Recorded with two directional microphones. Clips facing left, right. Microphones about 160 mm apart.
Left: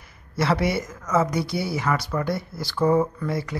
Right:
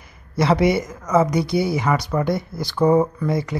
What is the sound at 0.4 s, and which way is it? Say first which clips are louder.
Speech: right 5 dB; 15° right (ahead or behind).